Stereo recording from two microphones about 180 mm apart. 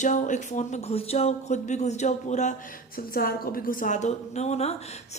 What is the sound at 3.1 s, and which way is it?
Speech, 55° left (ahead or behind).